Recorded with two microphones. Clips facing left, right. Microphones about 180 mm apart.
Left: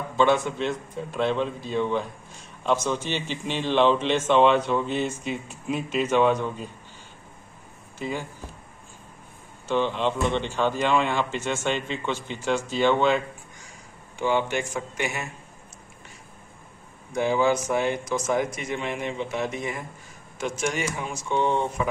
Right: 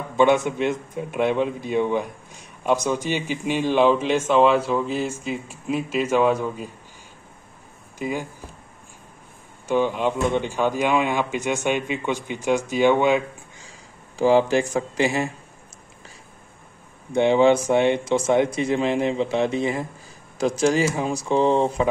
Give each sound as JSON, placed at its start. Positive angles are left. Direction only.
{"t": 0.2, "sound": "a man's voice", "side_deg": -15}
{"t": 8.0, "sound": "a man's voice", "side_deg": -10}
{"t": 9.7, "sound": "a man's voice", "side_deg": -10}
{"t": 14.1, "sound": "speech", "side_deg": -35}
{"t": 17.1, "sound": "speech", "side_deg": -30}